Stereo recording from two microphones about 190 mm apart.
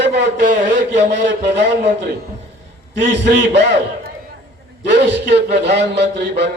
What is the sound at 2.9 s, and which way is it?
Speech, 65° right (ahead or behind).